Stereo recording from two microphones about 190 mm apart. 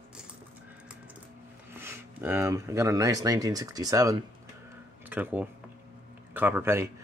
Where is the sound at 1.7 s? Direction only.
15° right (ahead or behind).